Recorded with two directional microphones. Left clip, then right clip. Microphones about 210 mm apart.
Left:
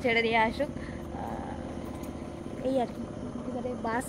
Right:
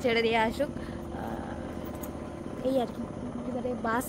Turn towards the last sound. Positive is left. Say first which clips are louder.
# right 2 dB
turn(degrees=-15)  # may be behind; listen again after turning